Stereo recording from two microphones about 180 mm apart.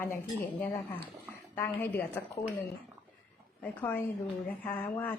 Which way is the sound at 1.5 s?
10° left (ahead or behind).